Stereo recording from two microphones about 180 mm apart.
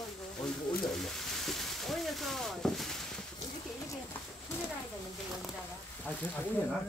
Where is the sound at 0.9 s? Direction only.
Centre (ahead or behind).